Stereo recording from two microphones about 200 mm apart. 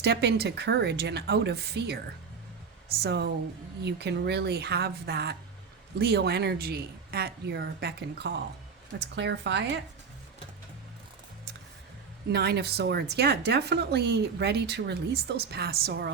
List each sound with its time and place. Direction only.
0.0 s speech: 55° right (ahead or behind)
3.0 s speech: 55° right (ahead or behind)
12.3 s speech: 55° right (ahead or behind)